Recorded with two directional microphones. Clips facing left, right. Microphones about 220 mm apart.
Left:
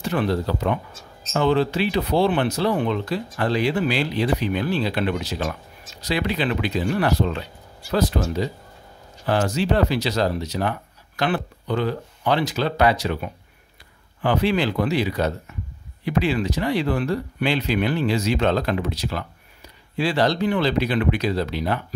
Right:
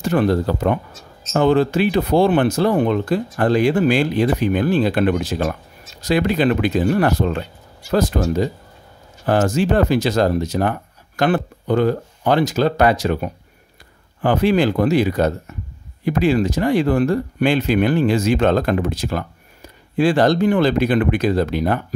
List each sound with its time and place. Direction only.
0.0 s speech: 45° right (ahead or behind)